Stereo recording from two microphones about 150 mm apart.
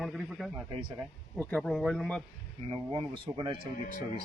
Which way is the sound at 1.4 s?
10° left (ahead or behind).